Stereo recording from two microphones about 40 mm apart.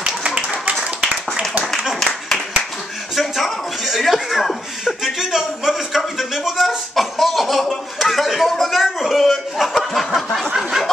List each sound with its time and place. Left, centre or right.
0.0 s clapping: right
3.2 s a sound: centre
4.8 s speech: centre
7.0 s chuckle: centre
8.0 s speech: centre